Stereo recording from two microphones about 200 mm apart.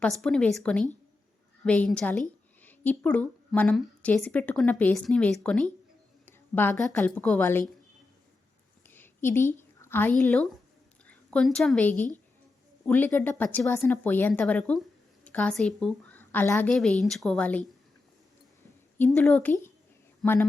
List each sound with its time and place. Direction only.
0.0 s a woman's voice: 5° left (ahead or behind)
8.9 s a sound: 10° left (ahead or behind)
9.6 s a woman's voice: 10° left (ahead or behind)
18.9 s speech: 10° left (ahead or behind)